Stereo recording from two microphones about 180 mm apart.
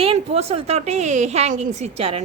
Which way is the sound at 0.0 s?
35° right (ahead or behind).